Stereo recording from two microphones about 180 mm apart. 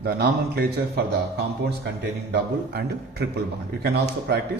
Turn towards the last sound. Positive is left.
turn(degrees=-65)  # may be behind; listen again after turning